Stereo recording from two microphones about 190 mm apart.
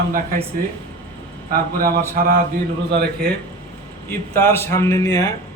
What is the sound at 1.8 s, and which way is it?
A man's voice, 50° right (ahead or behind).